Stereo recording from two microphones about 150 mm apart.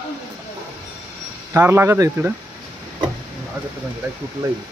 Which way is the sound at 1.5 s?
15° right (ahead or behind).